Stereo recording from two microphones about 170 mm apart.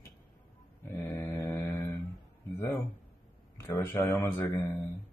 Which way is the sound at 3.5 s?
15° left (ahead or behind).